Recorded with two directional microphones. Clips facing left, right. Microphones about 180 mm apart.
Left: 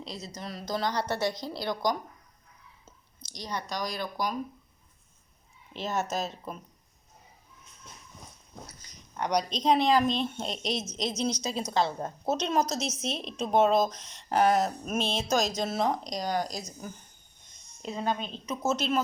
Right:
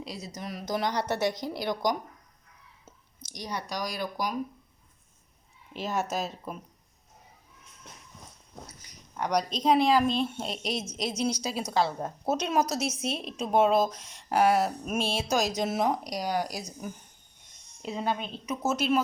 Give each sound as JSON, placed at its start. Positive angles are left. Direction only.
{"t": 0.0, "sound": "a woman's voice", "side_deg": -10}
{"t": 3.3, "sound": "a woman's voice", "side_deg": -10}
{"t": 5.7, "sound": "a woman's voice", "side_deg": -10}
{"t": 8.8, "sound": "a woman's voice", "side_deg": -10}
{"t": 17.8, "sound": "a woman's voice", "side_deg": -5}